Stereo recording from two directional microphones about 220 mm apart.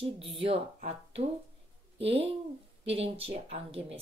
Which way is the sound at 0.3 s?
25° right (ahead or behind).